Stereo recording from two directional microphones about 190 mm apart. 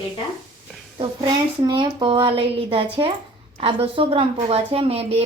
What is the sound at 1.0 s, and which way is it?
A woman's voice, 25° right (ahead or behind).